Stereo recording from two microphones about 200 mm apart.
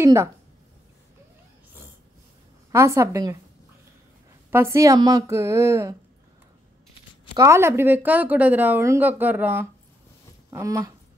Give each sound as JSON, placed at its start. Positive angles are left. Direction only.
{"t": 0.0, "sound": "speech", "side_deg": -15}
{"t": 2.7, "sound": "speech", "side_deg": -15}
{"t": 4.5, "sound": "speech", "side_deg": -10}
{"t": 7.3, "sound": "speech", "side_deg": -15}